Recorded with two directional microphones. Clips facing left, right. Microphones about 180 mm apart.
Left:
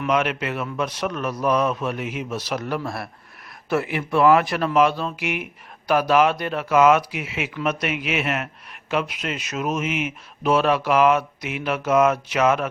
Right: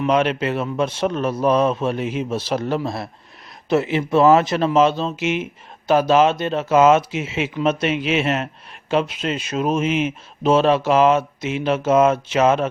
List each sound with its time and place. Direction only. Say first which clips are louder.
0.0 s speech: right 4 dB; 30° right (ahead or behind)